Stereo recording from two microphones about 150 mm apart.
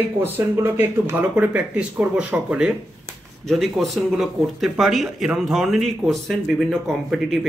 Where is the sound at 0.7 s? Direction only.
10° right (ahead or behind).